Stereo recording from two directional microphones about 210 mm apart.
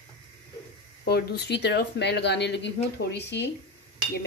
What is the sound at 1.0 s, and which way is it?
A woman's voice, 50° left (ahead or behind).